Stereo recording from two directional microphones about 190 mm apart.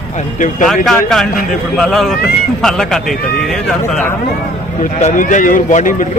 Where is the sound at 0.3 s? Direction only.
40° left (ahead or behind).